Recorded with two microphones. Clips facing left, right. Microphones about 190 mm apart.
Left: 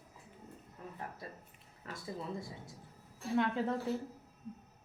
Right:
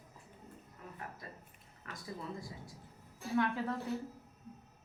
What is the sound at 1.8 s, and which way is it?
Speech, 30° left (ahead or behind).